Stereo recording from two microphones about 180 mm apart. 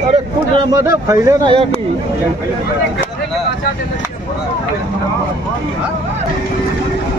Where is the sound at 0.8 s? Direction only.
20° right (ahead or behind).